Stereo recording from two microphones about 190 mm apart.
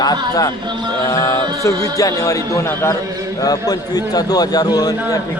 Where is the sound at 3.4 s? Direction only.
20° left (ahead or behind).